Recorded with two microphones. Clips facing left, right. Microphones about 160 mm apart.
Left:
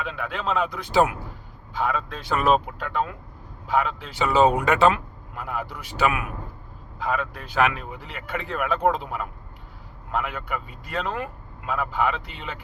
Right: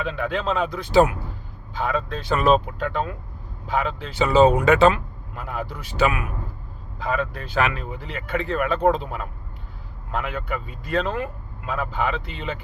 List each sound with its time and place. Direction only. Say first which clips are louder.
0.0 s speech: right 4 dB; 5° left (ahead or behind)